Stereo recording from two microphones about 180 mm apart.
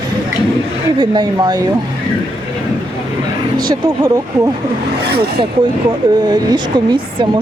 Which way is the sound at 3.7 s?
20° right (ahead or behind).